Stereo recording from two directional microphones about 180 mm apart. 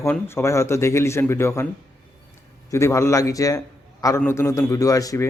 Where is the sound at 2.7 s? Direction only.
15° left (ahead or behind).